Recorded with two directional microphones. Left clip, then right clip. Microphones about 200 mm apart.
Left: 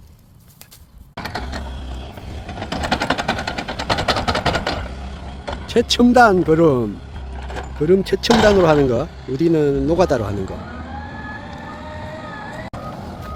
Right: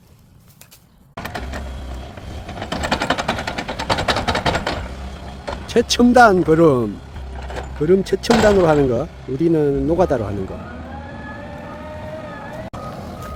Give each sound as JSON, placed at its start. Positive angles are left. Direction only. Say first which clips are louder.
{"t": 1.2, "sound": "mechanisms", "louder": "left 1 dB", "side_deg": -5}
{"t": 2.5, "sound": "a sound", "louder": "even", "side_deg": -10}
{"t": 5.5, "sound": "speech", "louder": "even", "side_deg": -5}
{"t": 12.1, "sound": "vehicle", "louder": "even", "side_deg": -20}